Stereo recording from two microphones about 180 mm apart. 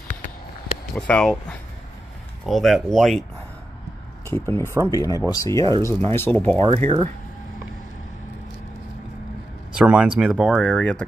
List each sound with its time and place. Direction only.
0.9 s speech: 5° left (ahead or behind)
2.4 s speech: centre (ahead or behind)
4.3 s speech: 15° left (ahead or behind)
6.6 s speech: 35° right (ahead or behind)
9.8 s speech: 5° right (ahead or behind)